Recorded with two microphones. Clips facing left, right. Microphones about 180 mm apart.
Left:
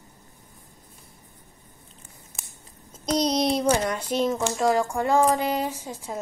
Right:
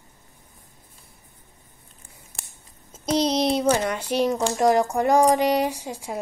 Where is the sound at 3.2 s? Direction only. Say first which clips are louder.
Right 1 dB; 30° right (ahead or behind).